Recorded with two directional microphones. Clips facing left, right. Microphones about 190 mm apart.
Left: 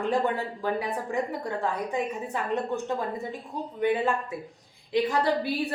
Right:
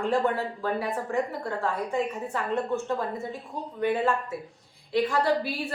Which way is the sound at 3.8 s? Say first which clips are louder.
Even; 15° left (ahead or behind).